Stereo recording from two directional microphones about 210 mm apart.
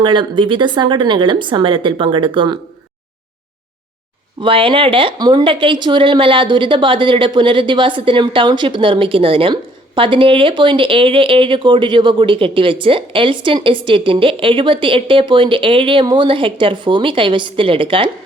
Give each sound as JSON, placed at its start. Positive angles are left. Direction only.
{"t": 0.0, "sound": "speech", "side_deg": -20}
{"t": 4.4, "sound": "speech", "side_deg": -25}